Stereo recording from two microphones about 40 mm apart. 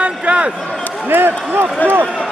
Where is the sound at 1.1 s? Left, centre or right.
Right.